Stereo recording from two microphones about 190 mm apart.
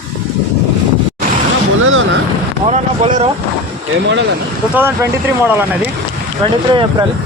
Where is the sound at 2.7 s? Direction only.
35° right (ahead or behind).